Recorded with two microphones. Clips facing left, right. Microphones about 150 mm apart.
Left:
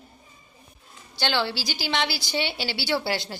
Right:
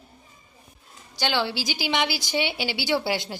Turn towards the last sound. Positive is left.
turn(degrees=-15)  # may be behind; listen again after turning